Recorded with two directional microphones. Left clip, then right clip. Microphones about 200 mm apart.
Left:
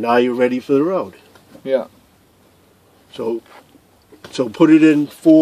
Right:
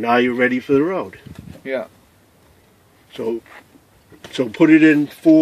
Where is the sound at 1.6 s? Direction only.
35° left (ahead or behind).